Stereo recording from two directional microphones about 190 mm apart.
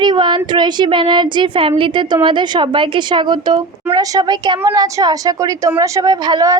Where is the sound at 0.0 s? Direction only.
25° right (ahead or behind).